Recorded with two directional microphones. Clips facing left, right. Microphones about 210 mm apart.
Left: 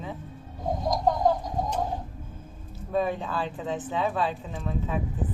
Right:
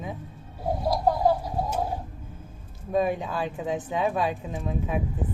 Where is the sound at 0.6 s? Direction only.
10° right (ahead or behind).